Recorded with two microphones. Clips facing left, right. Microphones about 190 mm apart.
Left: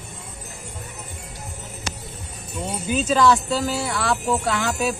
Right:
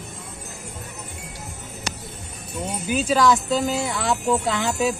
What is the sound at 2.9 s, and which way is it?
Speech, 10° right (ahead or behind).